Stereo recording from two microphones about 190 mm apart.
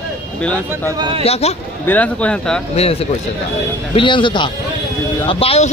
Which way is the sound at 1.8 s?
10° left (ahead or behind).